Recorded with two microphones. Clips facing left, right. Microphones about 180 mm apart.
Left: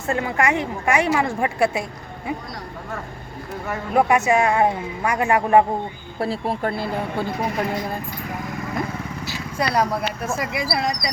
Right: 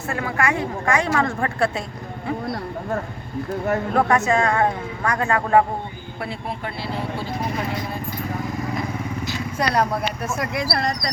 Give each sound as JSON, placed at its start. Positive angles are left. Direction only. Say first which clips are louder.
{"t": 0.1, "sound": "a woman's voice", "louder": "left 2 dB", "side_deg": 20}
{"t": 3.9, "sound": "a woman's voice", "louder": "left 3 dB", "side_deg": 15}
{"t": 6.1, "sound": "speech", "louder": "left 7 dB", "side_deg": 35}
{"t": 9.2, "sound": "speech", "louder": "even", "side_deg": 0}